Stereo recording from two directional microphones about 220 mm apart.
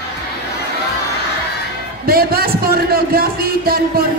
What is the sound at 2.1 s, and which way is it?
Speech, 45° right (ahead or behind).